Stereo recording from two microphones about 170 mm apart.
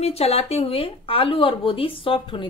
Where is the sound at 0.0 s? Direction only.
35° left (ahead or behind).